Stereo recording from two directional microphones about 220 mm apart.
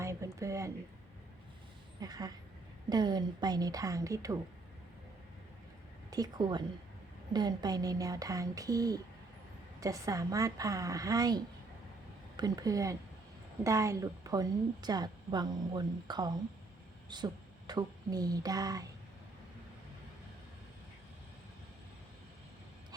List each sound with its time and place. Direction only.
0.0 s a sound: 15° right (ahead or behind)
0.3 s a woman's voice: 15° right (ahead or behind)
2.0 s a woman's voice: 15° right (ahead or behind)
6.1 s a woman's voice: 15° right (ahead or behind)